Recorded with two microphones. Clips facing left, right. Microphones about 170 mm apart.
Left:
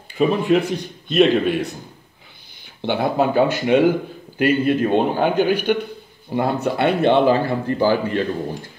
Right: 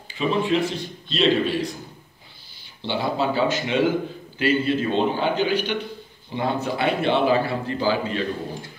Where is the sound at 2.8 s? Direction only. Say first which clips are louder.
Left 5 dB; 55° left (ahead or behind).